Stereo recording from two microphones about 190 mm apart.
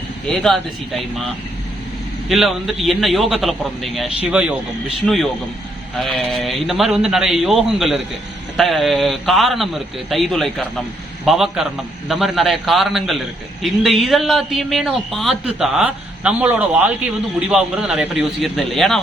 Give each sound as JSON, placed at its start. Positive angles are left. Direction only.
{"t": 0.3, "sound": "a man's voice", "side_deg": 0}
{"t": 2.3, "sound": "a man's voice", "side_deg": 0}